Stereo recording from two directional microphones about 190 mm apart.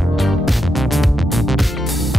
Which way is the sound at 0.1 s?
Centre (ahead or behind).